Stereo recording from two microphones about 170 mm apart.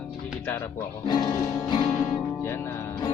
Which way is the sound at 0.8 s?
20° left (ahead or behind).